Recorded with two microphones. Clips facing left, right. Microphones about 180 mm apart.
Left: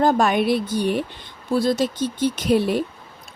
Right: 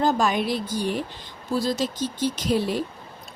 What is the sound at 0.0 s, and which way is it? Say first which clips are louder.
A woman's voice: left 4 dB; 60° left (ahead or behind).